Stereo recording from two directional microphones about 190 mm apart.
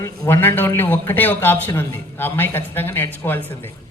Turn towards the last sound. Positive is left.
turn(degrees=10)  # may be behind; listen again after turning